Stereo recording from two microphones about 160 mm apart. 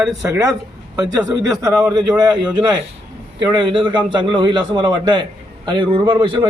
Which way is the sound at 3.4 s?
30° right (ahead or behind).